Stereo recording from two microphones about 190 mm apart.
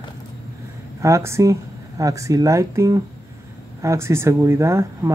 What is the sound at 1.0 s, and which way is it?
Speech, 15° right (ahead or behind).